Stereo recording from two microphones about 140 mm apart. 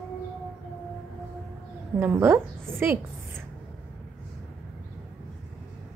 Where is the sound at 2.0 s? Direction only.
15° right (ahead or behind).